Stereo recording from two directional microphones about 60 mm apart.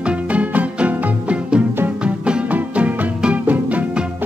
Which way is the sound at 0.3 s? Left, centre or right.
Right.